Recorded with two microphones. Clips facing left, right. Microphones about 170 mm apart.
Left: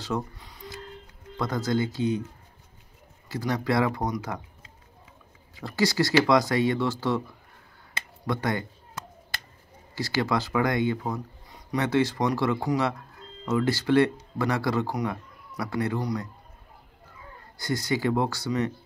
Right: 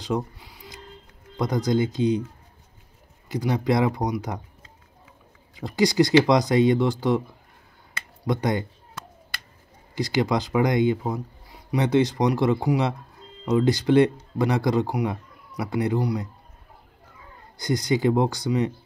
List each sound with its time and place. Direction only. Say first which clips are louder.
0.0 s a sound: right 3 dB; 10° right (ahead or behind)
1.3 s speech: right 4 dB; 15° right (ahead or behind)
3.3 s speech: right 4 dB; 15° right (ahead or behind)
5.6 s speech: right 5 dB; 15° right (ahead or behind)
8.3 s speech: right 4 dB; 20° right (ahead or behind)
9.9 s speech: right 3 dB; 15° right (ahead or behind)
17.6 s speech: right 4 dB; 20° right (ahead or behind)